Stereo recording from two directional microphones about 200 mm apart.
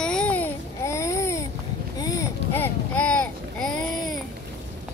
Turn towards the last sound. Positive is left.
turn(degrees=5)  # may be behind; listen again after turning